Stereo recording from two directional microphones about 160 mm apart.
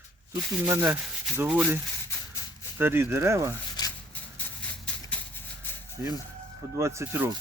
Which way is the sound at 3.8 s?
25° left (ahead or behind).